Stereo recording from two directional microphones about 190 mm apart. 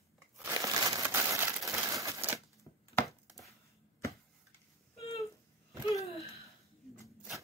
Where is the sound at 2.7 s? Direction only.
20° left (ahead or behind).